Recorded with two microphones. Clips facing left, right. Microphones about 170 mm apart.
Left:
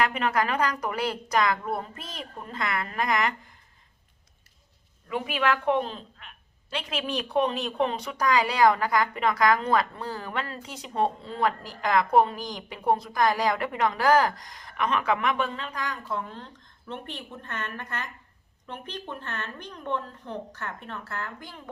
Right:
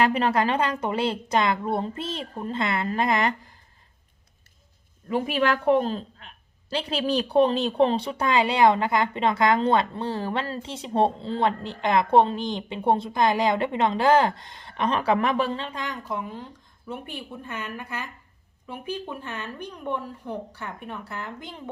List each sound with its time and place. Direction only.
0.0 s a woman's voice: 30° right (ahead or behind)
5.0 s a woman's voice: 35° right (ahead or behind); by 21.6 s 20° right (ahead or behind)